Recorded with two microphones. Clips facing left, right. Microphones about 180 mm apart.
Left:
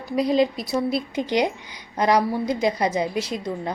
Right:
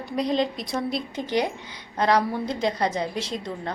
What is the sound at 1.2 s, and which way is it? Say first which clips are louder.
A woman's voice: left 2 dB; 15° left (ahead or behind).